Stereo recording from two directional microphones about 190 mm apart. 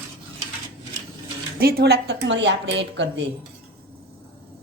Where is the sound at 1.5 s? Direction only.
55° right (ahead or behind).